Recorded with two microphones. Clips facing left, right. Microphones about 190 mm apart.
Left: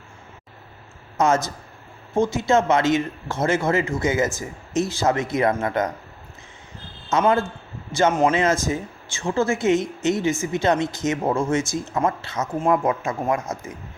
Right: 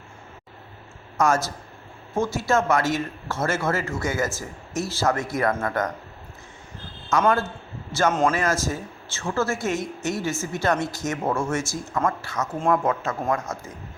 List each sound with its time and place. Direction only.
1.2 s speech: 20° left (ahead or behind)
7.1 s speech: 20° left (ahead or behind)